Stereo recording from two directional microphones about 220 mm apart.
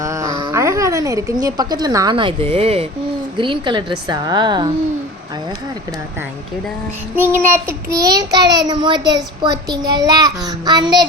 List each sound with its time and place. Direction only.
0.0 s a woman's voice: 15° right (ahead or behind)
7.2 s child singing: 10° right (ahead or behind)